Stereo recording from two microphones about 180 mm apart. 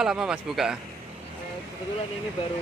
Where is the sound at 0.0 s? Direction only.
5° right (ahead or behind).